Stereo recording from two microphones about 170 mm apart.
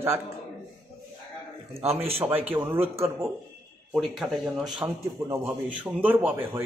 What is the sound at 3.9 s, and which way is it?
Speech, centre (ahead or behind).